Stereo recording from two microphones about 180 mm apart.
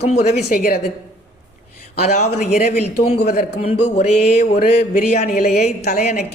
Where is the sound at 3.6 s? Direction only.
35° left (ahead or behind).